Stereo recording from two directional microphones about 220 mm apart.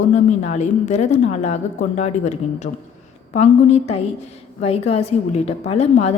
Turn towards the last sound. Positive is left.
turn(degrees=30)  # may be behind; listen again after turning